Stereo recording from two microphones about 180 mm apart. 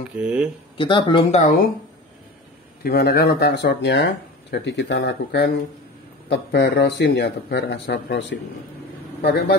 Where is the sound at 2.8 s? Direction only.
60° left (ahead or behind).